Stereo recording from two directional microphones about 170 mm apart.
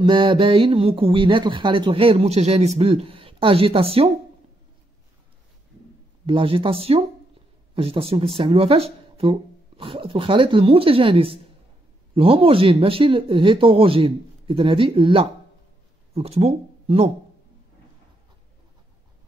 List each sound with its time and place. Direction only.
0.0 s speech: 30° right (ahead or behind)
6.2 s speech: 30° right (ahead or behind)